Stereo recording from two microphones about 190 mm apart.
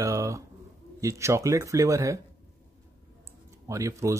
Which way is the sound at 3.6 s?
15° right (ahead or behind).